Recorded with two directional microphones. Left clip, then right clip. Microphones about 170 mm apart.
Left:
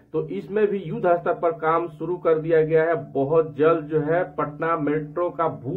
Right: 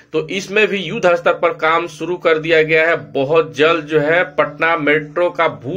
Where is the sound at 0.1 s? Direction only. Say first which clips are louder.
Right 8 dB; 15° right (ahead or behind).